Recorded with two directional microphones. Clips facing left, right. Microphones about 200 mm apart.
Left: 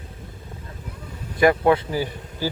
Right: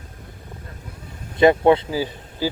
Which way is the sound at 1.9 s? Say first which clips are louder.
Right 1 dB; 15° right (ahead or behind).